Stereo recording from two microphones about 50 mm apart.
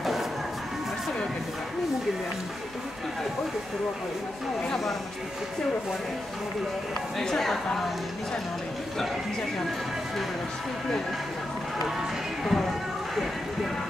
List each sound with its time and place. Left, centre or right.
4.6 s speech: centre
7.2 s speech: centre
12.4 s a sound: centre